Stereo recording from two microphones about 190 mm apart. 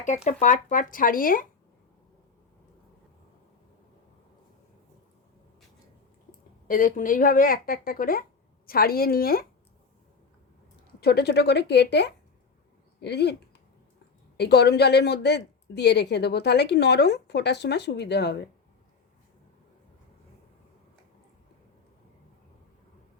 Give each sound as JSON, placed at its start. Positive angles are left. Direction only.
{"t": 0.3, "sound": "speech", "side_deg": 40}
{"t": 6.7, "sound": "speech", "side_deg": 45}
{"t": 11.0, "sound": "speech", "side_deg": 60}
{"t": 14.3, "sound": "speech", "side_deg": 60}